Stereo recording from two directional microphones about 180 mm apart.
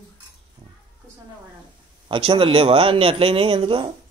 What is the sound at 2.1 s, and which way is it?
Speech, 30° right (ahead or behind).